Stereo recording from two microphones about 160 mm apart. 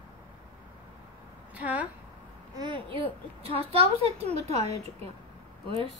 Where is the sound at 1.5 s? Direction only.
10° right (ahead or behind).